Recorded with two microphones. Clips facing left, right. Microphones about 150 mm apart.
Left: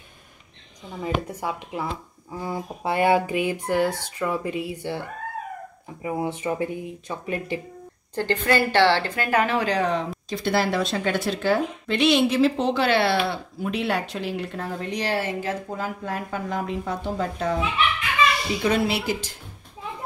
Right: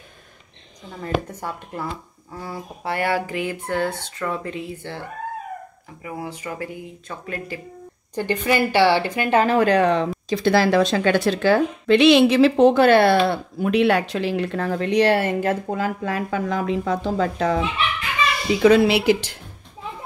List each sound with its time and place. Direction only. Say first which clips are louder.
1.0 s speech: right 1 dB; 10° left (ahead or behind)
6.0 s speech: left 5 dB; 25° left (ahead or behind)
8.1 s a woman's voice: right 1 dB; 15° right (ahead or behind)
9.6 s speech: right 6 dB; 60° right (ahead or behind); by 17.6 s 90° right
18.6 s speech: right 10 dB; 90° right